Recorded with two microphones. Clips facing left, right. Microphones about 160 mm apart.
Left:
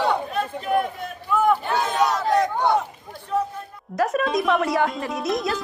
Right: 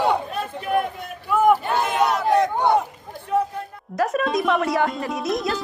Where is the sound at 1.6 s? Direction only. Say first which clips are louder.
Right 1 dB; 10° right (ahead or behind).